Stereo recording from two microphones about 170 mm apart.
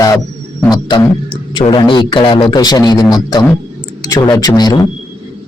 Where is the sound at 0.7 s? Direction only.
25° left (ahead or behind).